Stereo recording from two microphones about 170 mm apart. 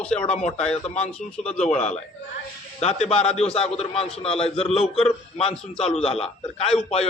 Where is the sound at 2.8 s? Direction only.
40° left (ahead or behind).